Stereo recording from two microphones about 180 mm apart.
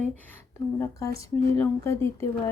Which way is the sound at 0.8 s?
15° left (ahead or behind).